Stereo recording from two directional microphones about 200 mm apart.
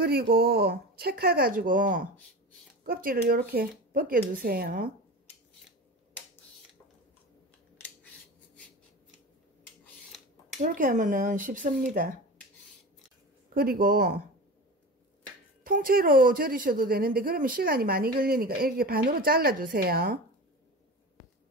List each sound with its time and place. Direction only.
0.0 s speech: 50° right (ahead or behind)
10.6 s speech: 45° right (ahead or behind)
13.6 s speech: 45° right (ahead or behind)
15.6 s speech: 45° right (ahead or behind)